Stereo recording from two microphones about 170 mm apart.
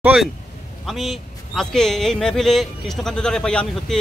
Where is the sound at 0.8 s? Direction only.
Centre (ahead or behind).